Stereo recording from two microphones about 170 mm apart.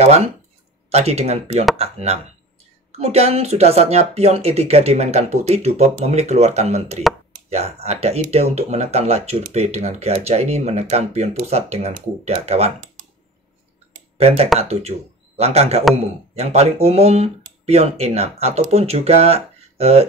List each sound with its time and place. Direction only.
0.8 s speech: 40° right (ahead or behind)
14.1 s speech: 35° right (ahead or behind)